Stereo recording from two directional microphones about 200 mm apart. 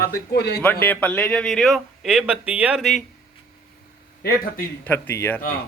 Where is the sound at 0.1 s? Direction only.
55° left (ahead or behind).